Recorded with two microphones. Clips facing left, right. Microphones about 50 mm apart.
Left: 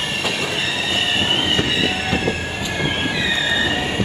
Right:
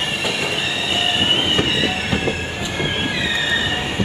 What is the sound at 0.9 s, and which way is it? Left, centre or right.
Train, right.